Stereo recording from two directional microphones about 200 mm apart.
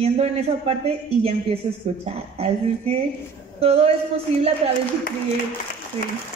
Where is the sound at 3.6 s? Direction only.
30° right (ahead or behind).